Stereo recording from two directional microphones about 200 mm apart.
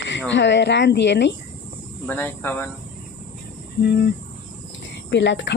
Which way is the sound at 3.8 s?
55° left (ahead or behind).